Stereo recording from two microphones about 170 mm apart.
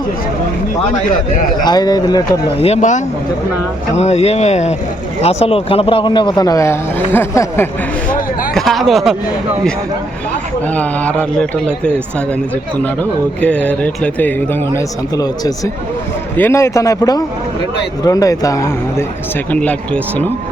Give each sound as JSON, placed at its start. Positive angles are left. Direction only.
{"t": 1.6, "sound": "a man's voice", "side_deg": 25}
{"t": 2.6, "sound": "a man's voice", "side_deg": 40}
{"t": 8.5, "sound": "a sound", "side_deg": 0}
{"t": 10.8, "sound": "a man's voice", "side_deg": 5}
{"t": 12.8, "sound": "a man's voice", "side_deg": 10}
{"t": 14.8, "sound": "a man's voice", "side_deg": 20}
{"t": 19.5, "sound": "a man's voice", "side_deg": 5}